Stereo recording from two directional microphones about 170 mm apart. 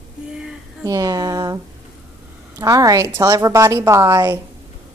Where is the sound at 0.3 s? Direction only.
5° right (ahead or behind).